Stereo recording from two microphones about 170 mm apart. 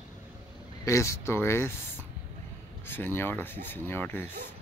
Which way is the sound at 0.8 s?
20° left (ahead or behind).